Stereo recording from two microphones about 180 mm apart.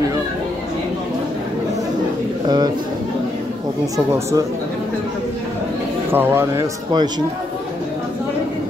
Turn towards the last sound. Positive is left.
turn(degrees=-20)  # may be behind; listen again after turning